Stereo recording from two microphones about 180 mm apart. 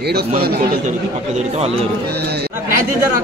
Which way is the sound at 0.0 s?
60° right (ahead or behind).